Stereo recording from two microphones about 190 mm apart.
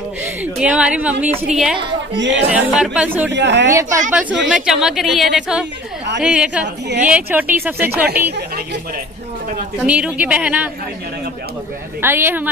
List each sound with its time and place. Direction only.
0.2 s a woman's voice: 5° right (ahead or behind)
2.1 s speech: 70° right (ahead or behind)
2.5 s speech: 5° right (ahead or behind)
3.3 s speech: 65° right (ahead or behind)
3.6 s speech: 15° right (ahead or behind)
9.8 s speech: 5° right (ahead or behind)
12.0 s speech: 10° right (ahead or behind)